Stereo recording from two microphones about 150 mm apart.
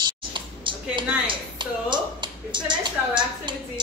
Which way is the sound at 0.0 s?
35° right (ahead or behind).